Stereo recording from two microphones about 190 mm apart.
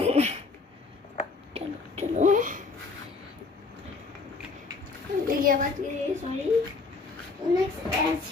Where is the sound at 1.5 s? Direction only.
35° right (ahead or behind).